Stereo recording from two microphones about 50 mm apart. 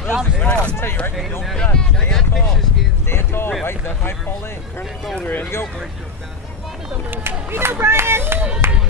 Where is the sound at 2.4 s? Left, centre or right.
Centre.